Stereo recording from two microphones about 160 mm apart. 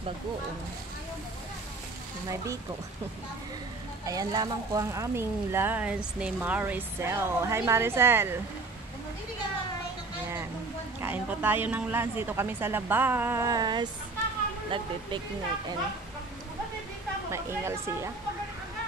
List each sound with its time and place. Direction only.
4.0 s speech: 20° right (ahead or behind)
11.0 s speech: 15° right (ahead or behind); by 14.9 s 30° right (ahead or behind)
17.3 s speech: 15° right (ahead or behind)